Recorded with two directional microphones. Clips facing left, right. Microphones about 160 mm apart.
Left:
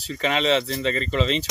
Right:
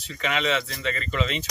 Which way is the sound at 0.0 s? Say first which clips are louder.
Left 4 dB; 35° left (ahead or behind).